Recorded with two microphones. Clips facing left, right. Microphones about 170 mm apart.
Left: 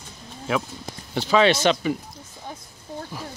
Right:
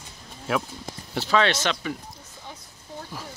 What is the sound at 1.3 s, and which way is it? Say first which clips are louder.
Speech: left 5 dB; 10° left (ahead or behind).